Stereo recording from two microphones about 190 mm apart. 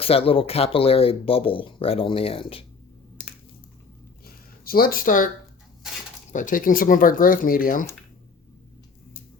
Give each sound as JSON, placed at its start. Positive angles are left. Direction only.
{"t": 0.0, "sound": "speech", "side_deg": 30}
{"t": 4.3, "sound": "a sound", "side_deg": 50}
{"t": 6.3, "sound": "speech", "side_deg": 45}